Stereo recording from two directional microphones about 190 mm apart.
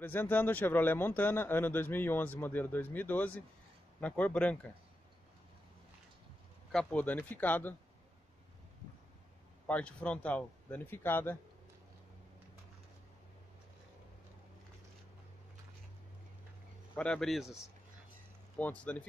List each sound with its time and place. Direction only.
0.0 s speech: 10° left (ahead or behind)
6.7 s speech: 5° left (ahead or behind)
9.7 s speech: 5° left (ahead or behind)
16.9 s speech: 5° left (ahead or behind)
18.6 s speech: 5° left (ahead or behind)